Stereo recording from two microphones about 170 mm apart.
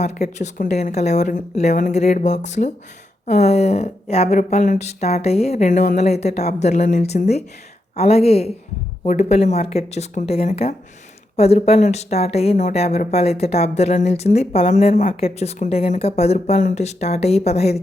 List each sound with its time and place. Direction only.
0.0 s a woman's voice: 40° left (ahead or behind)